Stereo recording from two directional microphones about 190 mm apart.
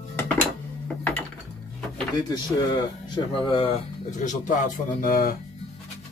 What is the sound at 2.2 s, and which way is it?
Speech, 20° left (ahead or behind).